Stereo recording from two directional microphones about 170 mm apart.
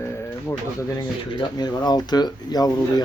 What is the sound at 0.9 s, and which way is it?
Speech, 25° left (ahead or behind).